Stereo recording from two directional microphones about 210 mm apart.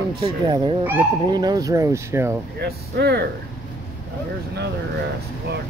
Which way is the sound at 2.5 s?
50° right (ahead or behind).